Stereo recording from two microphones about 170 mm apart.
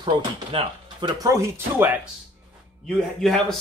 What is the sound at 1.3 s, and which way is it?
Speech, 15° right (ahead or behind).